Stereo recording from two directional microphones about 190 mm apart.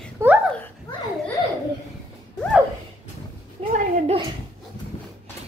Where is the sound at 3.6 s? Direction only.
30° right (ahead or behind).